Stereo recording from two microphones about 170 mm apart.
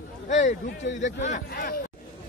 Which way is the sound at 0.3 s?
45° left (ahead or behind).